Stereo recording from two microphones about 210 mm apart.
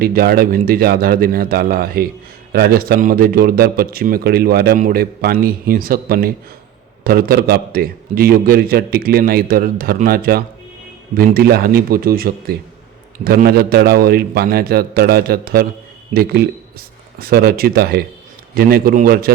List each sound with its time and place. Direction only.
0.0 s a man's voice: 45° right (ahead or behind)